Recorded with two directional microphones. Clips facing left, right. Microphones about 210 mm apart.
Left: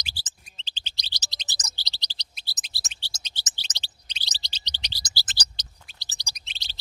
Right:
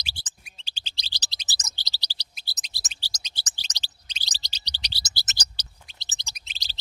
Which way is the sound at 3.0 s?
40° right (ahead or behind).